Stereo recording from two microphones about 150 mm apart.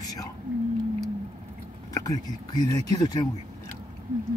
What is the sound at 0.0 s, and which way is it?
Whispering, 25° left (ahead or behind).